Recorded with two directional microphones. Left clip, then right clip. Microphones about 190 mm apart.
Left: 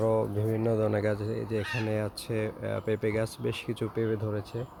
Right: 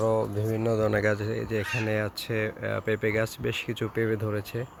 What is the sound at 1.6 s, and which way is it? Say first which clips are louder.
Speech: right 3 dB; 15° right (ahead or behind).